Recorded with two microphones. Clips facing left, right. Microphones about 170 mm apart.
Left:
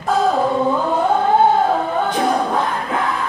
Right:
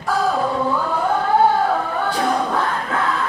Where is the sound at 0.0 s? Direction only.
20° left (ahead or behind).